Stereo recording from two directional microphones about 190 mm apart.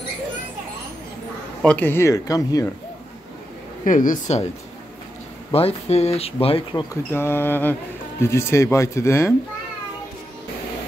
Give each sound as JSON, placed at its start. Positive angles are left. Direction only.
{"t": 1.6, "sound": "speech", "side_deg": 5}
{"t": 3.8, "sound": "speech", "side_deg": 45}
{"t": 5.5, "sound": "speech", "side_deg": 30}